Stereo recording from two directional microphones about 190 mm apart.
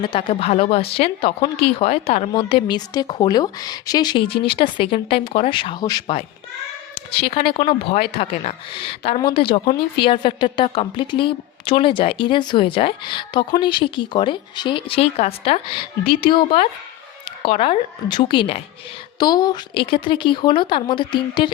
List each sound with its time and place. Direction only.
0.0 s speech: 25° left (ahead or behind)